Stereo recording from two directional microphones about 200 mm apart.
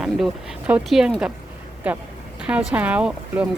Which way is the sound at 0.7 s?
5° right (ahead or behind).